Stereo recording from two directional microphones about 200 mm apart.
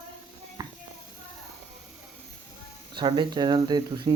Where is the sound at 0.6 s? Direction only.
20° right (ahead or behind).